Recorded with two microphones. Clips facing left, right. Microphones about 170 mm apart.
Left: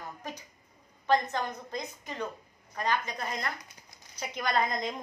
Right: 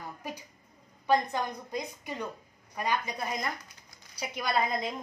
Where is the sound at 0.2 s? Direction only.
10° right (ahead or behind).